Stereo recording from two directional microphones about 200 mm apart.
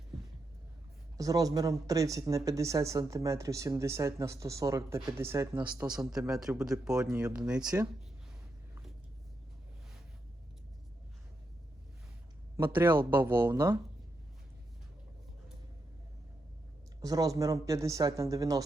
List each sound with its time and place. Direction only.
1.1 s speech: 15° right (ahead or behind)
12.5 s speech: 10° right (ahead or behind)
17.0 s speech: 15° right (ahead or behind)